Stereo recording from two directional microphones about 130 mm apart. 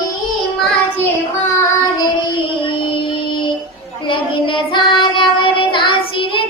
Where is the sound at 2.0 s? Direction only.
35° left (ahead or behind).